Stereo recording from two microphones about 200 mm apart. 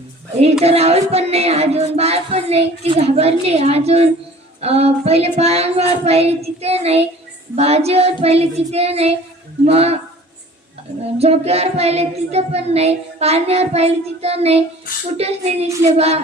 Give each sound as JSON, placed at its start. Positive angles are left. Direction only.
{"t": 0.6, "sound": "child singing", "side_deg": -30}
{"t": 11.2, "sound": "child singing", "side_deg": -30}